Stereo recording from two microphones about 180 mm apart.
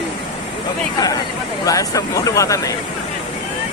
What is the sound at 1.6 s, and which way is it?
Speech, 20° left (ahead or behind).